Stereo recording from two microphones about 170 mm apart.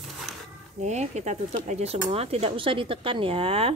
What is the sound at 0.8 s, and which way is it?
Speech, 40° right (ahead or behind).